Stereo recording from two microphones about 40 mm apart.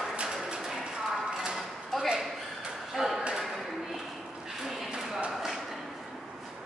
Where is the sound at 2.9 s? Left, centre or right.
Centre.